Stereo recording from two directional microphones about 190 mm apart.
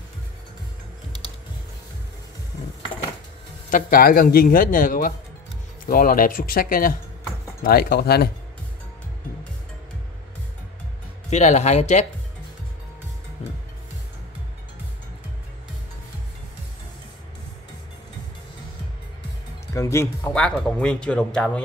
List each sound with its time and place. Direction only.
3.7 s a man's voice: 50° left (ahead or behind)
11.2 s speech: 35° left (ahead or behind)
19.7 s music: 15° left (ahead or behind)
20.3 s speech: 5° left (ahead or behind)